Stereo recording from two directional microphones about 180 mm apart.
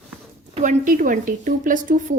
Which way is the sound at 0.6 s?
45° right (ahead or behind).